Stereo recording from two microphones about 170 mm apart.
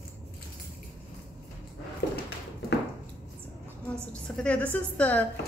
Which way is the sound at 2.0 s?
75° left (ahead or behind).